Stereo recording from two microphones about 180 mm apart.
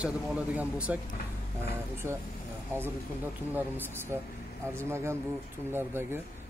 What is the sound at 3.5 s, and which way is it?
Speech, 10° right (ahead or behind).